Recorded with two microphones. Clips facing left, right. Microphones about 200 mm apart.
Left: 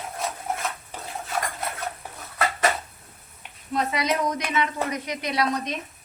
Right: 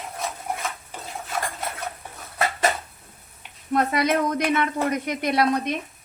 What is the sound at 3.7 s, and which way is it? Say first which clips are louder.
Speech: right 4 dB; 55° right (ahead or behind).